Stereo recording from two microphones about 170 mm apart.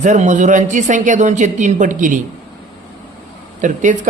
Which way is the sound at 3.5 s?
45° right (ahead or behind).